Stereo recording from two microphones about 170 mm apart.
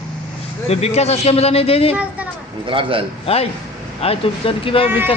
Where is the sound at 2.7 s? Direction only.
30° right (ahead or behind).